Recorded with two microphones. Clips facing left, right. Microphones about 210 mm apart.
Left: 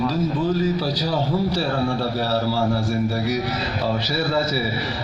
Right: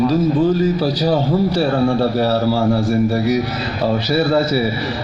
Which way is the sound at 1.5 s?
55° right (ahead or behind).